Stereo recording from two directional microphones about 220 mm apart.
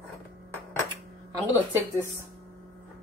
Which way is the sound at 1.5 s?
10° right (ahead or behind).